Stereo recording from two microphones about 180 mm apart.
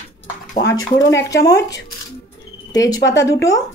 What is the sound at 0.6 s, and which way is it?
Speech, 75° left (ahead or behind).